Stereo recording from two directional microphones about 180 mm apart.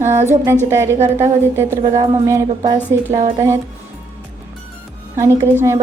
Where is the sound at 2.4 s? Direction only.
35° right (ahead or behind).